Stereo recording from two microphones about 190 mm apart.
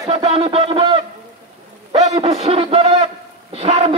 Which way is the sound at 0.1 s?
30° right (ahead or behind).